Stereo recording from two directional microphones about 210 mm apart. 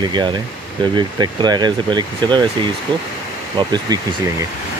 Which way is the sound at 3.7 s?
20° right (ahead or behind).